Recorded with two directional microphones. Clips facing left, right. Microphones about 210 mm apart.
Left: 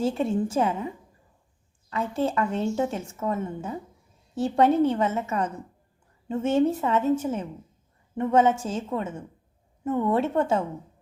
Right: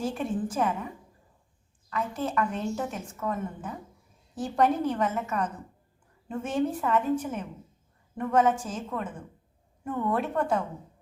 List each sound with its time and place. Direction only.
0.0 s a woman's voice: 25° left (ahead or behind)
1.9 s a woman's voice: 25° left (ahead or behind)